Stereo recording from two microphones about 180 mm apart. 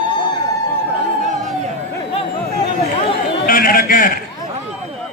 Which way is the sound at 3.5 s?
50° left (ahead or behind).